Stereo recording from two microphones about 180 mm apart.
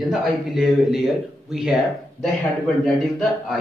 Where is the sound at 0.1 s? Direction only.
Centre (ahead or behind).